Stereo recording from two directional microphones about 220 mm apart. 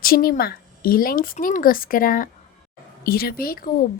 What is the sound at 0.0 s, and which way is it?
A woman's voice, 40° left (ahead or behind).